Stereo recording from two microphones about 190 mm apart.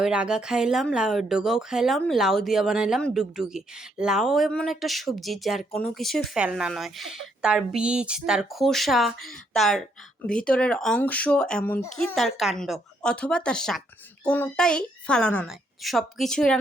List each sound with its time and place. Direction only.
0.0 s speech: 5° right (ahead or behind)